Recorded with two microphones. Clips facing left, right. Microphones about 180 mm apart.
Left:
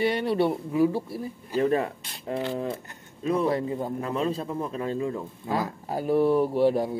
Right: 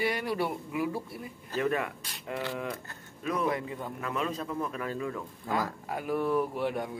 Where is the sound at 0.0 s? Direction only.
25° left (ahead or behind).